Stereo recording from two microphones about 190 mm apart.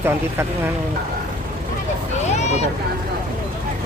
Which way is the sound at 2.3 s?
35° left (ahead or behind).